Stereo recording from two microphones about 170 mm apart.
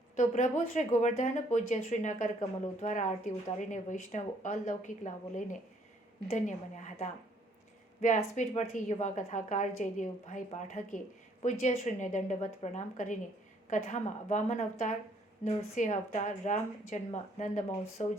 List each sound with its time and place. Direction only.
0.2 s a woman's voice: 45° left (ahead or behind)